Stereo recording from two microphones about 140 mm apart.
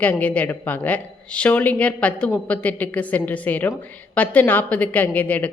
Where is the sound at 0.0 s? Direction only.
10° left (ahead or behind).